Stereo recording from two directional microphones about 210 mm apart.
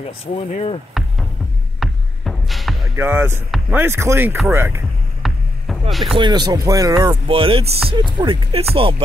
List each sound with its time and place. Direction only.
0.2 s speech: 30° left (ahead or behind)
1.0 s music: centre (ahead or behind)
3.0 s speech: 10° right (ahead or behind)
5.2 s rowboat: centre (ahead or behind)
6.1 s speech: 20° right (ahead or behind)